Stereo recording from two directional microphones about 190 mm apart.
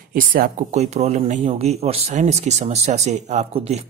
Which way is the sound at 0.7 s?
35° right (ahead or behind).